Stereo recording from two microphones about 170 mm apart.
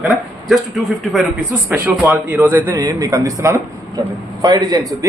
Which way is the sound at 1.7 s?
10° right (ahead or behind).